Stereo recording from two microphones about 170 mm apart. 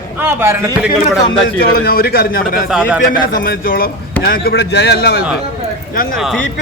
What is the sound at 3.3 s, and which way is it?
Speech, 55° left (ahead or behind).